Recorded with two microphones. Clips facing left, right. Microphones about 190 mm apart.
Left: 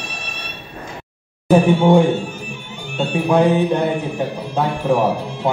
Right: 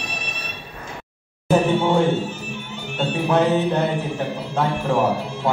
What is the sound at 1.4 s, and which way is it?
Music, 15° left (ahead or behind).